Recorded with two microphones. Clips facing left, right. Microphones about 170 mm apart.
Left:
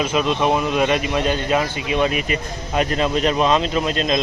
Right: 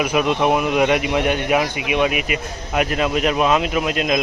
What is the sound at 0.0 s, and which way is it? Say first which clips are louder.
Speech: right 1 dB; 15° right (ahead or behind).